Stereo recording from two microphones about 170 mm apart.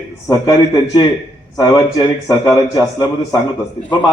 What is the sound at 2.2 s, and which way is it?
Speech, 20° left (ahead or behind).